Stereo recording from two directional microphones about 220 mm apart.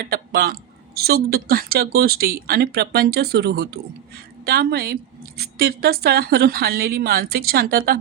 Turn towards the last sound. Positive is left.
turn(degrees=-45)  # may be behind; listen again after turning